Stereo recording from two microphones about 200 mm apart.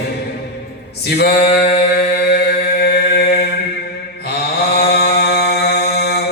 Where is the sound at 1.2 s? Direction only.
55° left (ahead or behind).